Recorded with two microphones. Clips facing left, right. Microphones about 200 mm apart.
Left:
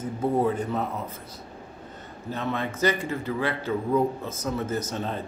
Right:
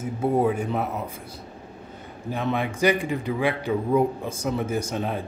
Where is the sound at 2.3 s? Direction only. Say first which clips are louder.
Right 3 dB; 15° right (ahead or behind).